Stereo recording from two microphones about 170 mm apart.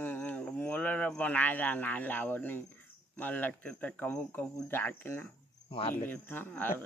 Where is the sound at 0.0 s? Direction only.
10° left (ahead or behind).